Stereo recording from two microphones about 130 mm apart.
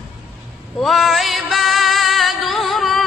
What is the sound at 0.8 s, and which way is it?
Music, centre (ahead or behind).